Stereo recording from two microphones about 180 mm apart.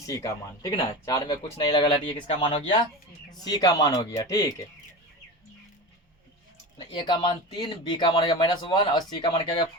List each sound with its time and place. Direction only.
0.0 s speech: 20° left (ahead or behind)
6.7 s speech: 25° left (ahead or behind)